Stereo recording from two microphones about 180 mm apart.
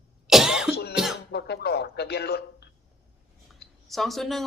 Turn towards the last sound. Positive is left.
turn(degrees=0)  # may be behind; listen again after turning